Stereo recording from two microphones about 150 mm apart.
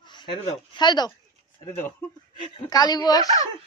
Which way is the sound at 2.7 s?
25° left (ahead or behind).